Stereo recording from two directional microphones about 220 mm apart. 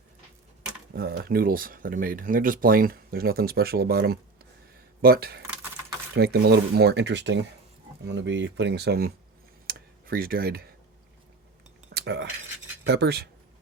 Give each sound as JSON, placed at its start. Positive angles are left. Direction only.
{"t": 0.9, "sound": "speech", "side_deg": -45}
{"t": 9.6, "sound": "tick", "side_deg": -40}
{"t": 11.9, "sound": "speech", "side_deg": -50}